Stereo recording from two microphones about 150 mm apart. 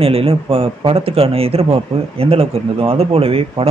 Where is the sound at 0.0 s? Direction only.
40° right (ahead or behind).